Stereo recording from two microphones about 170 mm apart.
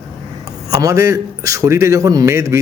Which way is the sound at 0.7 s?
20° right (ahead or behind).